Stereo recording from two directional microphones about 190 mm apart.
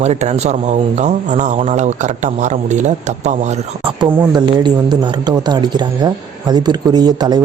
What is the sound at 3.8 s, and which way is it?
Speech, 25° right (ahead or behind).